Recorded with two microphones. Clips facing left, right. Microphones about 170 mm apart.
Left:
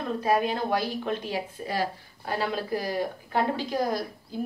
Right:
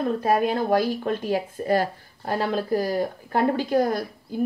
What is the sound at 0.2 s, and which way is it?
Speech, 50° right (ahead or behind).